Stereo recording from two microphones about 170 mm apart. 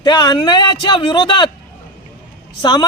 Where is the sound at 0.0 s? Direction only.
25° left (ahead or behind).